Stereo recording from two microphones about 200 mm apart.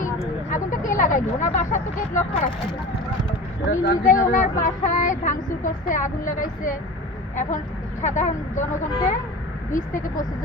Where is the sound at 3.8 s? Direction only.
40° left (ahead or behind).